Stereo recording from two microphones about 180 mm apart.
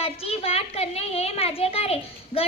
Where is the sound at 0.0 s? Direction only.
35° left (ahead or behind).